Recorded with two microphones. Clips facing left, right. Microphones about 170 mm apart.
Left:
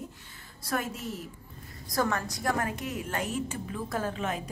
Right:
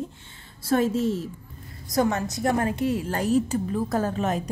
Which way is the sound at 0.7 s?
25° right (ahead or behind).